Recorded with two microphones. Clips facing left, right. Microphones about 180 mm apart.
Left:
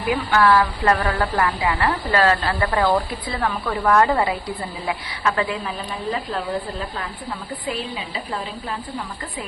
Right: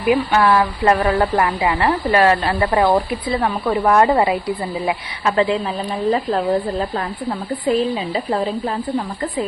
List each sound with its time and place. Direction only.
0.1 s speech: 25° right (ahead or behind)
6.0 s speech: 35° right (ahead or behind)